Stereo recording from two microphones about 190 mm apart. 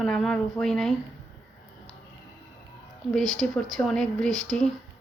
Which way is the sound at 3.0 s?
Centre (ahead or behind).